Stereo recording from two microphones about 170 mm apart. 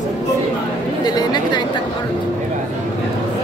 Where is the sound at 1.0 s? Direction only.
25° left (ahead or behind).